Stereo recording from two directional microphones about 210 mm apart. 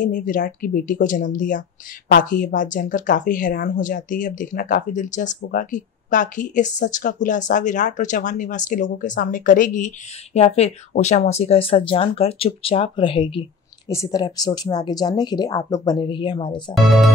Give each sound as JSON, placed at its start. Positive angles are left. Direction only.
{"t": 0.0, "sound": "speech", "side_deg": 40}